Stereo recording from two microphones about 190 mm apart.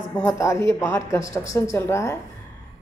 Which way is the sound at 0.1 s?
15° left (ahead or behind).